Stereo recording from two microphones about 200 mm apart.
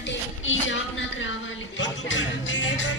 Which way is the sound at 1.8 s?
65° left (ahead or behind).